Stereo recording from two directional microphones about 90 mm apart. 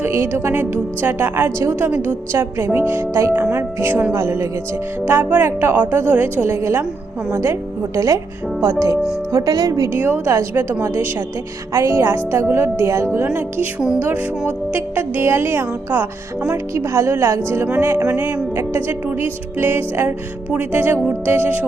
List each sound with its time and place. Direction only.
0.0 s speech: 25° right (ahead or behind)
9.3 s speech: 45° right (ahead or behind)
10.0 s speech: 25° right (ahead or behind)
13.7 s speech: 5° right (ahead or behind)
14.0 s speech: 25° right (ahead or behind)